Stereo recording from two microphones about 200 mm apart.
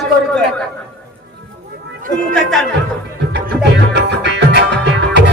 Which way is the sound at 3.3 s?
60° right (ahead or behind).